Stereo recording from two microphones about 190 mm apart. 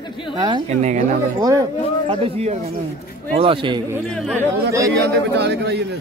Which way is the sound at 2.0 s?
30° right (ahead or behind).